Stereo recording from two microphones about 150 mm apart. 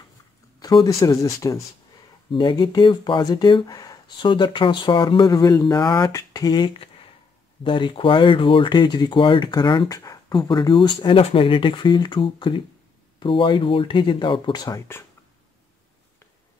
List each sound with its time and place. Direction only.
0.6 s speech: 25° left (ahead or behind)
2.3 s speech: 30° left (ahead or behind)